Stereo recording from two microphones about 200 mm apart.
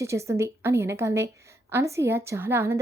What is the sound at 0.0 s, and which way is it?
Speech, 15° right (ahead or behind).